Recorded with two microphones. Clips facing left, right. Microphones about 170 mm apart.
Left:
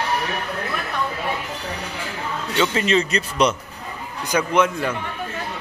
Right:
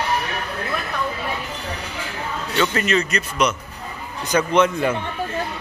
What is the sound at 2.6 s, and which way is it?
Speech, 20° left (ahead or behind).